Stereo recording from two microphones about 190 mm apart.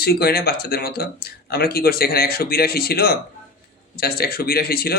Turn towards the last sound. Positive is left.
turn(degrees=55)  # may be behind; listen again after turning